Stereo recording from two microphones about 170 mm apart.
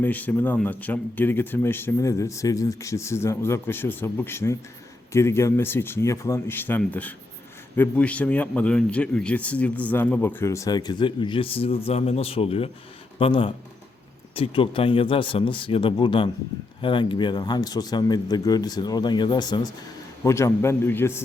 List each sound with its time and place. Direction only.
0.0 s a man's voice: 10° left (ahead or behind)